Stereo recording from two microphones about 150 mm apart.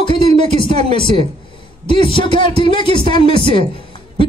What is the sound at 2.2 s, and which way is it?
A man's voice, 35° left (ahead or behind).